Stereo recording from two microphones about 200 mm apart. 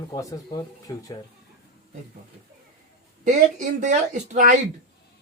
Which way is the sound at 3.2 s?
35° right (ahead or behind).